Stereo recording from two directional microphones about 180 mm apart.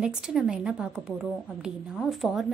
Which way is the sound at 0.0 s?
5° right (ahead or behind).